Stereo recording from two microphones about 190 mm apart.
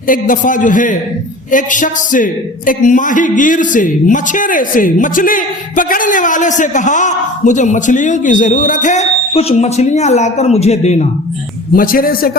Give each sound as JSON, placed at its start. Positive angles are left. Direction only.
{"t": 0.1, "sound": "speech", "side_deg": 45}
{"t": 11.8, "sound": "speech", "side_deg": 50}